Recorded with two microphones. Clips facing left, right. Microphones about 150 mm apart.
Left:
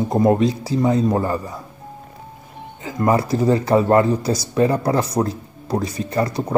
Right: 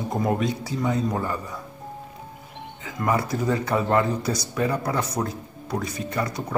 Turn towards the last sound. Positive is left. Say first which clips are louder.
# left 6 dB
turn(degrees=35)  # may be behind; listen again after turning